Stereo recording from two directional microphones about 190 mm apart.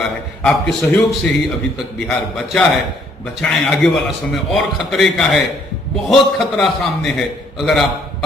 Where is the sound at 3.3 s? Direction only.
Centre (ahead or behind).